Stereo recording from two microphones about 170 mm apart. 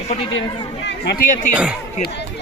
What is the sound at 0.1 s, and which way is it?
Speech, 35° left (ahead or behind).